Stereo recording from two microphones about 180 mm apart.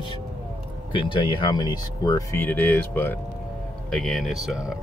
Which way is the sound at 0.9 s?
25° left (ahead or behind).